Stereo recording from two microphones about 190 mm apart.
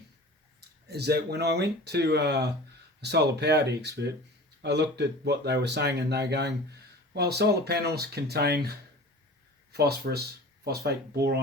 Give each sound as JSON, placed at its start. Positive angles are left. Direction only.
{"t": 0.9, "sound": "speech", "side_deg": -60}
{"t": 9.7, "sound": "speech", "side_deg": -55}